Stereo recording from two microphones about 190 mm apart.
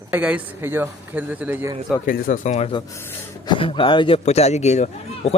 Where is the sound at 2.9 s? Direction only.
15° left (ahead or behind).